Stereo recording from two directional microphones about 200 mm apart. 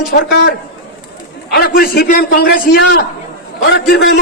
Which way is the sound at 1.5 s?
50° left (ahead or behind).